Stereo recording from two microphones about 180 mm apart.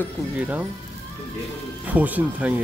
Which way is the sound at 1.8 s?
10° right (ahead or behind).